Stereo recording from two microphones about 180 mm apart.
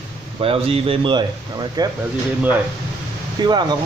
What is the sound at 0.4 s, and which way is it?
Speech, 30° right (ahead or behind).